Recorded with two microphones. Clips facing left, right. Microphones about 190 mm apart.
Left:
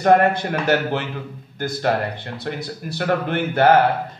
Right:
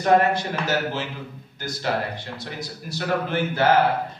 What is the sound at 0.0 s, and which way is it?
A man's voice, 55° left (ahead or behind).